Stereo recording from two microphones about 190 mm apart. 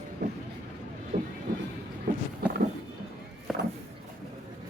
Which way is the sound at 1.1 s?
45° right (ahead or behind).